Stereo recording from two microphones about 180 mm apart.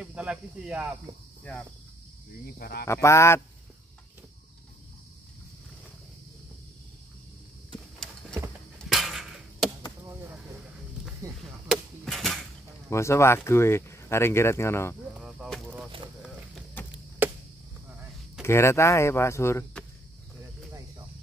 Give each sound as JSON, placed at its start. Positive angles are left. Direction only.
{"t": 0.0, "sound": "speech", "side_deg": -5}
{"t": 2.4, "sound": "speech", "side_deg": 60}
{"t": 2.8, "sound": "speech", "side_deg": 15}
{"t": 8.8, "sound": "a sound", "side_deg": 0}
{"t": 11.7, "sound": "a sound", "side_deg": 0}
{"t": 12.9, "sound": "speech", "side_deg": 15}
{"t": 15.1, "sound": "a sound", "side_deg": 0}
{"t": 16.8, "sound": "chop", "side_deg": 10}
{"t": 17.2, "sound": "chop", "side_deg": -10}
{"t": 18.4, "sound": "speech", "side_deg": 15}